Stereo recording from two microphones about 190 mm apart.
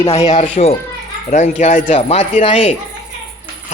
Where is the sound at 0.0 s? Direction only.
20° left (ahead or behind).